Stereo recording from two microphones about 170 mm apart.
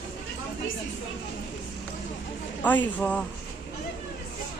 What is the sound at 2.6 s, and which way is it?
Speech, 10° left (ahead or behind).